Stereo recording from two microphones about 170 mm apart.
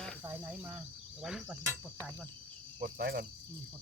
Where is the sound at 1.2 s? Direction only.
5° right (ahead or behind).